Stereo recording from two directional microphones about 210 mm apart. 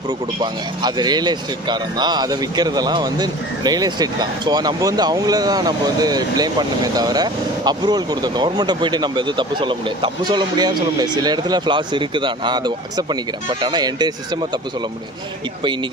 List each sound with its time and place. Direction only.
0.4 s speech: 20° right (ahead or behind)